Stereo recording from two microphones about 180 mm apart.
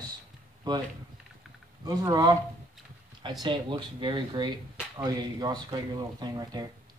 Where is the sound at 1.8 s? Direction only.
25° right (ahead or behind).